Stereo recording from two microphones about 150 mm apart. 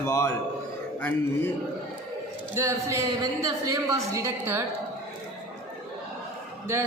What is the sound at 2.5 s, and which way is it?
A woman's voice, 20° right (ahead or behind).